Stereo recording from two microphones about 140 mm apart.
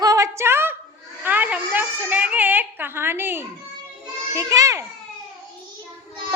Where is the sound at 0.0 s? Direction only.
25° right (ahead or behind).